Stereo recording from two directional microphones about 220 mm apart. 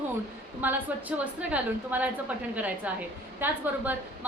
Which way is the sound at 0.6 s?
10° right (ahead or behind).